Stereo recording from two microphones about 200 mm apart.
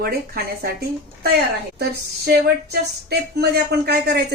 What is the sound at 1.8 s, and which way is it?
A woman's voice, 55° right (ahead or behind).